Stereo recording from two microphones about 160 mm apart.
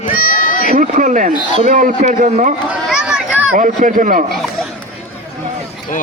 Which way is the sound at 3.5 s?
55° right (ahead or behind).